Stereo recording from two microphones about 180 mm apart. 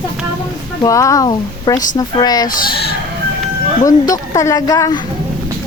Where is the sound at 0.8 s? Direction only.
20° left (ahead or behind).